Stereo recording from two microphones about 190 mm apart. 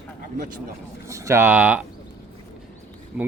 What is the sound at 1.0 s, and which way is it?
Speech, 15° right (ahead or behind).